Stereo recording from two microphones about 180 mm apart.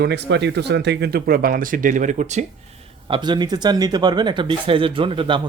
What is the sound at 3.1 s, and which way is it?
Speech, 25° right (ahead or behind).